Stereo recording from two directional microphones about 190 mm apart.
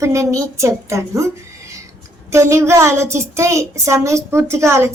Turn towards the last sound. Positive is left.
turn(degrees=-15)  # may be behind; listen again after turning